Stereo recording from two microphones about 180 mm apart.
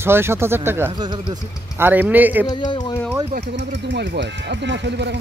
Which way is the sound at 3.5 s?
80° right.